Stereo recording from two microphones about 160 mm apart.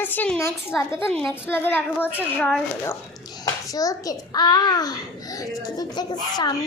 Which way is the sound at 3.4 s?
20° left (ahead or behind).